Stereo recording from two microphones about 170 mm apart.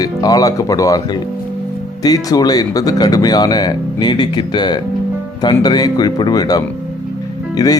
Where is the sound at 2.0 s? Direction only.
20° left (ahead or behind).